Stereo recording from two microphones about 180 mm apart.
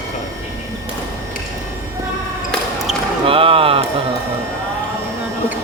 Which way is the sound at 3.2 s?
30° right (ahead or behind).